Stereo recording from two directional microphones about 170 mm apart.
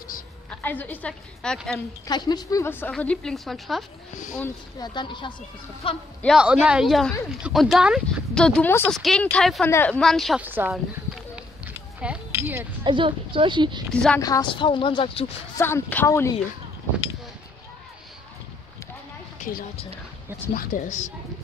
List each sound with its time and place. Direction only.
0.5 s a woman's voice: 10° left (ahead or behind)
2.0 s a woman's voice: 25° left (ahead or behind); by 3.8 s centre (ahead or behind)
4.7 s a woman's voice: 25° left (ahead or behind)
6.2 s speech: 5° right (ahead or behind)
10.4 s speech: 10° right (ahead or behind)
11.3 s a sound: 5° right (ahead or behind)
12.8 s a woman's voice: 30° right (ahead or behind)
14.2 s a woman's voice: 25° left (ahead or behind)
15.5 s a woman's voice: 15° left (ahead or behind)
20.5 s speech: 50° left (ahead or behind)